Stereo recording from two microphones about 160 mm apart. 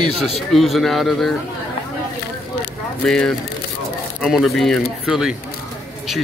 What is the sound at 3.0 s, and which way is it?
Speech, 5° left (ahead or behind).